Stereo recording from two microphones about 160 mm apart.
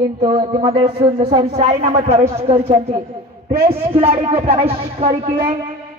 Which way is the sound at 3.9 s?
35° right (ahead or behind).